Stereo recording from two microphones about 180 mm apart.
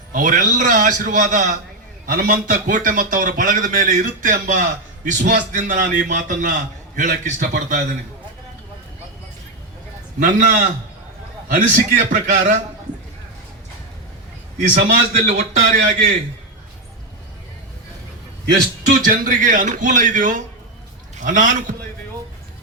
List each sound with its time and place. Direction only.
0.1 s speech: 50° right (ahead or behind)
10.2 s speech: 45° right (ahead or behind)
14.8 s speech: 45° right (ahead or behind)
18.8 s speech: 50° right (ahead or behind)